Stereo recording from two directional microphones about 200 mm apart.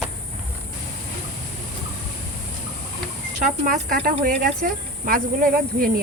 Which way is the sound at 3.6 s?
45° right (ahead or behind).